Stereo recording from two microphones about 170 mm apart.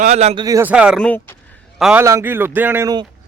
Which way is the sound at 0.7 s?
5° right (ahead or behind).